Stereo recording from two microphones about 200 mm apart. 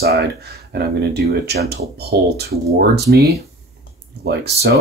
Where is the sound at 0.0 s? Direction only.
50° right (ahead or behind).